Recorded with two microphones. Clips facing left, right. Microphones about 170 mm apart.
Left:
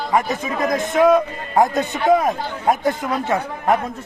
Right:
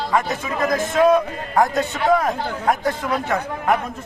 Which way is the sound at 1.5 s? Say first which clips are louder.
Left 2 dB; 20° left (ahead or behind).